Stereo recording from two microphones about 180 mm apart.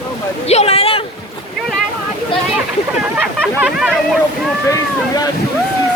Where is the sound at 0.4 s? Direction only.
35° left (ahead or behind).